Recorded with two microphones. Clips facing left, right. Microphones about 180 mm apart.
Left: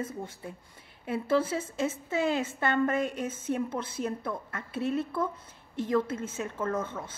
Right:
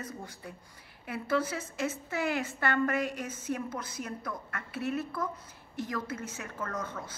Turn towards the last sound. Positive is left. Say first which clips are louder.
# left 5 dB
turn(degrees=25)  # may be behind; listen again after turning